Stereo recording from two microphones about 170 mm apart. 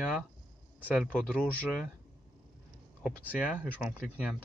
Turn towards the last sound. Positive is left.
turn(degrees=-5)  # may be behind; listen again after turning